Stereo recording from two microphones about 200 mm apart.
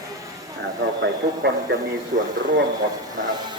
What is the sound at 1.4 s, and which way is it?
Speech, 55° right (ahead or behind).